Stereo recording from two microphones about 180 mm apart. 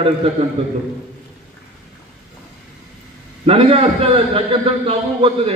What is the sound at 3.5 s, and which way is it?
A man's voice, 30° right (ahead or behind).